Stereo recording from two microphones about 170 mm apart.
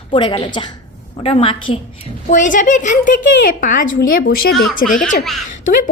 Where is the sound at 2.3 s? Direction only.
50° left (ahead or behind).